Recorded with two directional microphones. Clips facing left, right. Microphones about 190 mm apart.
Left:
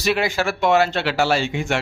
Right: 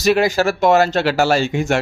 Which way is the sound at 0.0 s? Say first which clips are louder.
Right 6 dB; 40° right (ahead or behind).